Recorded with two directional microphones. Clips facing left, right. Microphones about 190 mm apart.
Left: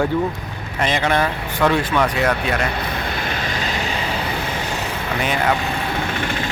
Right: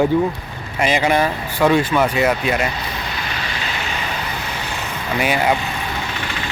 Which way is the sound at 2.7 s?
55° left (ahead or behind).